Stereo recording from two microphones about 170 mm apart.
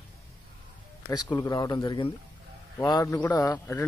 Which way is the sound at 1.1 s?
25° left (ahead or behind).